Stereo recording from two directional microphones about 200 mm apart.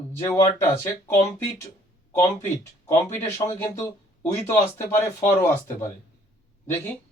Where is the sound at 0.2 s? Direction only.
15° left (ahead or behind).